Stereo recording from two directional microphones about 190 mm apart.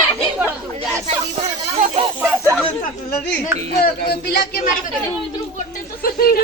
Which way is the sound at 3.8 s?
55° left (ahead or behind).